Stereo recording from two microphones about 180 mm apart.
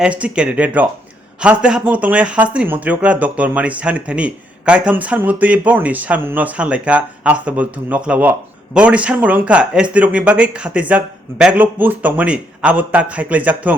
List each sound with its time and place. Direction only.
0.0 s speech: 5° right (ahead or behind)